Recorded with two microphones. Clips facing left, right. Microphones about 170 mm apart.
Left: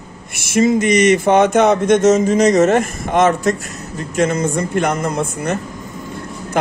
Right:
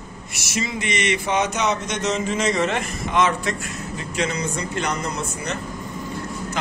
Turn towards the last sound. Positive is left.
turn(degrees=55)  # may be behind; listen again after turning